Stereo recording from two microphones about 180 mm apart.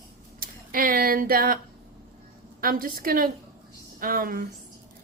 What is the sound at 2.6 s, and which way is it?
A woman's voice, 50° right (ahead or behind).